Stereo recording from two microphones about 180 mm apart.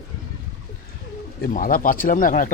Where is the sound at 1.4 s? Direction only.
50° left (ahead or behind).